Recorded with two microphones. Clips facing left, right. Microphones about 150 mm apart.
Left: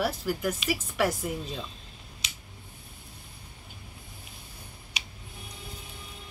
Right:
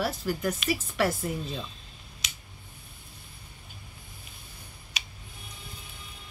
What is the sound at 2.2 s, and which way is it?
Scissors, 30° left (ahead or behind).